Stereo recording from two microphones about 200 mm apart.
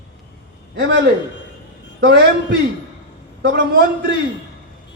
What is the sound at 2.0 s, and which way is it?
Speech, 55° right (ahead or behind).